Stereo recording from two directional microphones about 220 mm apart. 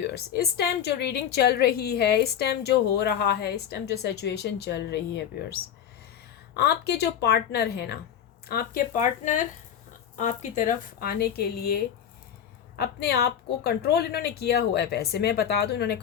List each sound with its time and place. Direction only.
0.0 s a woman's voice: 45° left (ahead or behind)
6.6 s a woman's voice: 50° left (ahead or behind)